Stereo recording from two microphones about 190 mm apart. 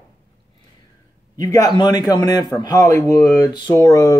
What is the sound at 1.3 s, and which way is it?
Speech, 20° left (ahead or behind).